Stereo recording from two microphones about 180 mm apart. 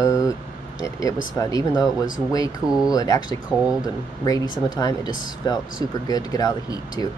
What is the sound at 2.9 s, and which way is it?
Speech, 20° left (ahead or behind).